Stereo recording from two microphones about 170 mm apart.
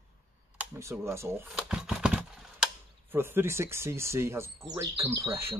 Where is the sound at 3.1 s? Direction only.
15° right (ahead or behind).